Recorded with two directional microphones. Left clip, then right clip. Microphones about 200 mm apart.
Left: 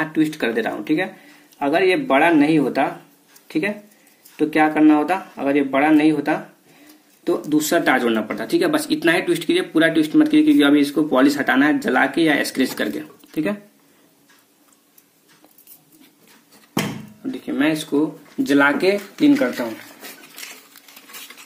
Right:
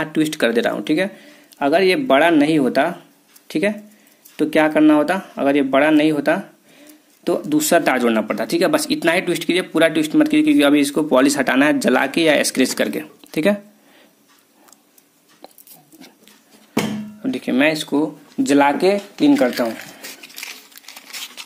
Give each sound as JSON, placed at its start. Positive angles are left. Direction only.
{"t": 0.0, "sound": "speech", "side_deg": -45}
{"t": 4.4, "sound": "speech", "side_deg": -50}
{"t": 17.2, "sound": "speech", "side_deg": -50}